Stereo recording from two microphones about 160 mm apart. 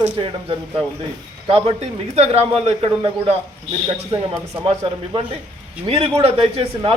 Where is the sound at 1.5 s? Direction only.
35° right (ahead or behind).